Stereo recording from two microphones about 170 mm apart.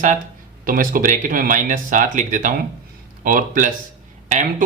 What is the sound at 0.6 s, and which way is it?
A man's voice, 55° right (ahead or behind).